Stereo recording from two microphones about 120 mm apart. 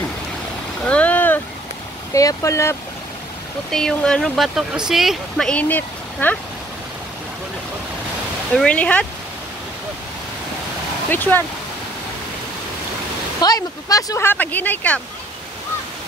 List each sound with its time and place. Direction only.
0.8 s boat: 10° left (ahead or behind)
2.1 s speech: 25° left (ahead or behind)
3.7 s speech: 5° left (ahead or behind)
5.5 s speech: 10° left (ahead or behind)
8.5 s speech: 10° left (ahead or behind)
11.1 s speech: 15° left (ahead or behind)
13.4 s speech: 30° left (ahead or behind); by 15.0 s 15° left (ahead or behind)